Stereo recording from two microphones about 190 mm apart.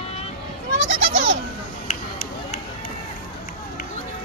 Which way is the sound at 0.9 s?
35° right (ahead or behind).